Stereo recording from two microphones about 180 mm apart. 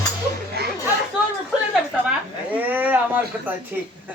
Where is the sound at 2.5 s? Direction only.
10° right (ahead or behind).